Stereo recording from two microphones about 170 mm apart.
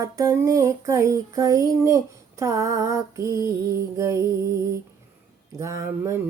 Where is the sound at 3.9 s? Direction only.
15° right (ahead or behind).